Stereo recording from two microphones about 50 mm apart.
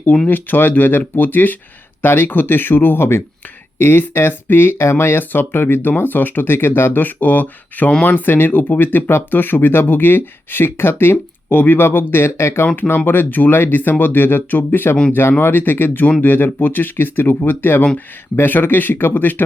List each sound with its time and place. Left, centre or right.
0.3 s speech: left
3.8 s speech: left
13.1 s speech: left